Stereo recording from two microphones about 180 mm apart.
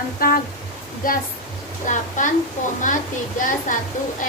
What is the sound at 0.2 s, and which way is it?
Speech, 55° left (ahead or behind).